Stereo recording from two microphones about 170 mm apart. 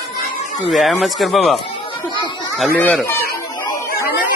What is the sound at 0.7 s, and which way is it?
Speech, centre (ahead or behind).